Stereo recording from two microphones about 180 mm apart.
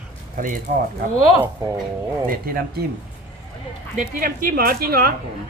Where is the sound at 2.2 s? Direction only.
55° right (ahead or behind).